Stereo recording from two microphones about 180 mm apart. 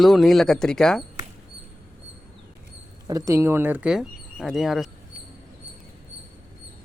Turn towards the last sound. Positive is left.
turn(degrees=0)  # may be behind; listen again after turning